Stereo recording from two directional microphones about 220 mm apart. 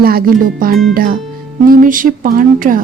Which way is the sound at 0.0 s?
45° right (ahead or behind).